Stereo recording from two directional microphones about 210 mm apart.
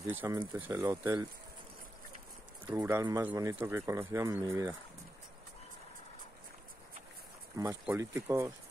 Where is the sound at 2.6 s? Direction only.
10° right (ahead or behind).